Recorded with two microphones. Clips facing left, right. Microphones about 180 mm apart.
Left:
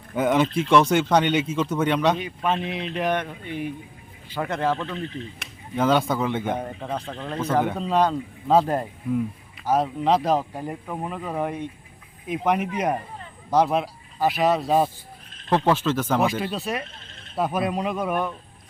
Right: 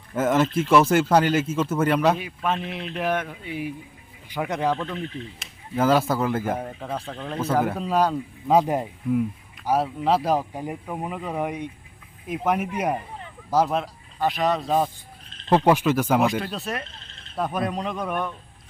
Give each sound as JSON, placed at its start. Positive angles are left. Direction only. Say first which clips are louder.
{"t": 0.1, "sound": "speech", "louder": "even", "side_deg": 0}
{"t": 5.7, "sound": "speech", "louder": "right 1 dB", "side_deg": -5}
{"t": 13.7, "sound": "speech", "louder": "left 2 dB", "side_deg": 5}
{"t": 15.4, "sound": "speech", "louder": "right 2 dB", "side_deg": -15}
{"t": 16.2, "sound": "speech", "louder": "even", "side_deg": 0}